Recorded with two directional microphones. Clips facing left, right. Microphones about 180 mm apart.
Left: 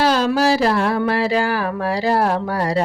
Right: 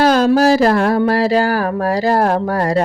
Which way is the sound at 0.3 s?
45° right (ahead or behind).